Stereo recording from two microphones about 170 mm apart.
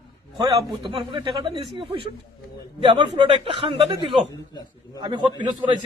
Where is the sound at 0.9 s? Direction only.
30° right (ahead or behind).